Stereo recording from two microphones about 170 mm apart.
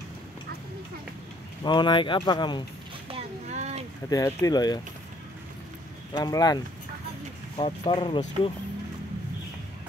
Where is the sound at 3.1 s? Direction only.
40° right (ahead or behind).